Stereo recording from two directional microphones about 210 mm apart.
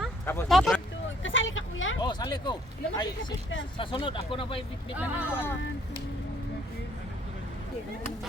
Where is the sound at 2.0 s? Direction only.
20° left (ahead or behind).